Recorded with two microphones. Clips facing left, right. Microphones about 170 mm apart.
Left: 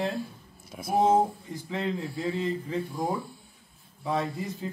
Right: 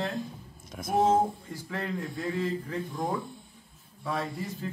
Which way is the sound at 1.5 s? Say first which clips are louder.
Left 3 dB; 20° left (ahead or behind).